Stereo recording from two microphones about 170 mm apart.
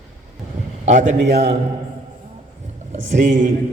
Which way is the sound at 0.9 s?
45° right (ahead or behind).